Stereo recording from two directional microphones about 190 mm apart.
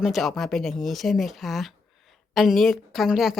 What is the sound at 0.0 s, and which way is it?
A woman's voice, centre (ahead or behind).